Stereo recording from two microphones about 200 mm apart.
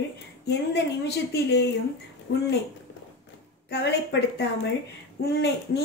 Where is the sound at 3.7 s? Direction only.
55° left (ahead or behind).